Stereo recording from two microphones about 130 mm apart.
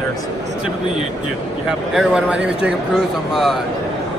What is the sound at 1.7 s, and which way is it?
Speech, 5° right (ahead or behind).